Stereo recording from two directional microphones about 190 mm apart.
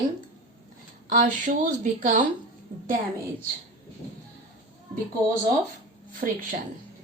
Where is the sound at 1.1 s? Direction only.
45° right (ahead or behind).